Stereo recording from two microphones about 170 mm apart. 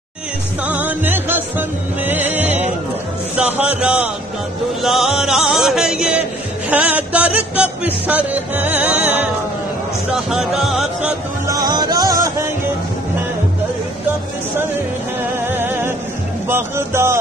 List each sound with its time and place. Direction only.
0.7 s music: 10° right (ahead or behind)
4.8 s chant: centre (ahead or behind)
6.7 s music: 10° right (ahead or behind)
11.4 s music: 20° right (ahead or behind)
15.4 s music: 10° right (ahead or behind)